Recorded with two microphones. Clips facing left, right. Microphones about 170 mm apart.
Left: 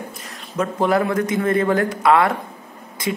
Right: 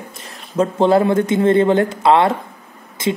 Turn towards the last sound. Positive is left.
turn(degrees=-25)  # may be behind; listen again after turning